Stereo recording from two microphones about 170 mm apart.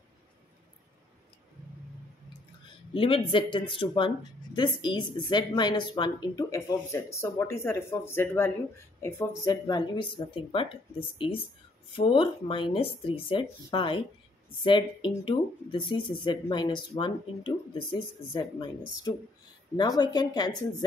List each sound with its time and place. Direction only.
2.9 s a woman's voice: 30° left (ahead or behind)